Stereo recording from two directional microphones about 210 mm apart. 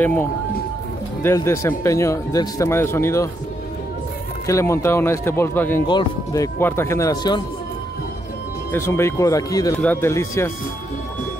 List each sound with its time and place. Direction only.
0.0 s speech: 10° left (ahead or behind)
4.5 s speech: 15° left (ahead or behind)
8.7 s speech: 10° left (ahead or behind)